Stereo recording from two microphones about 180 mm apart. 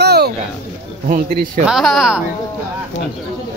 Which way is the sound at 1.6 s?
Centre (ahead or behind).